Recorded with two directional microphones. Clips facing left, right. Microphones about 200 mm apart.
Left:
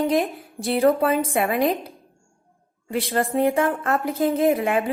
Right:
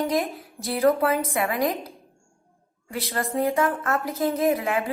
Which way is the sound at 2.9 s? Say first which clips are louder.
Left 5 dB; 30° left (ahead or behind).